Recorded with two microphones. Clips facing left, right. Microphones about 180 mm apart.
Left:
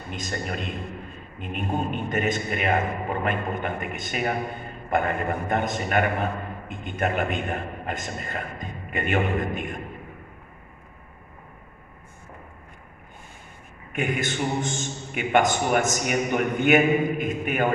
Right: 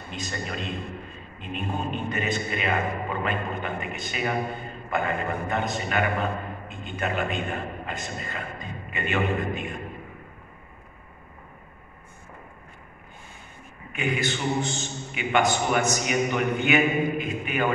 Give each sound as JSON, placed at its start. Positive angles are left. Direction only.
{"t": 0.1, "sound": "a man's voice", "side_deg": 50}
{"t": 13.9, "sound": "a man's voice", "side_deg": 50}